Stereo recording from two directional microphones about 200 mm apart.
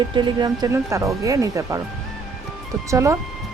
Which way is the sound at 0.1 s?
25° right (ahead or behind).